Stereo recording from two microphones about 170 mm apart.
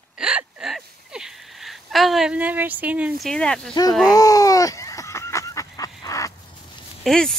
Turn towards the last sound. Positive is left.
turn(degrees=0)  # may be behind; listen again after turning